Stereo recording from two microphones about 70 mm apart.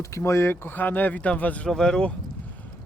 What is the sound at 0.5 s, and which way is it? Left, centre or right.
Speech, left.